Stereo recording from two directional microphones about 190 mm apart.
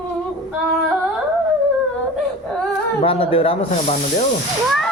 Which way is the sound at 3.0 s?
30° left (ahead or behind).